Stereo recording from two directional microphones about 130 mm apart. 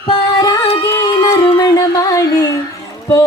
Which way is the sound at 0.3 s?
35° left (ahead or behind).